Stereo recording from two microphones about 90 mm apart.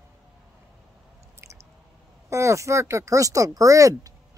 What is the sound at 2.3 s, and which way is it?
Speech, 35° right (ahead or behind).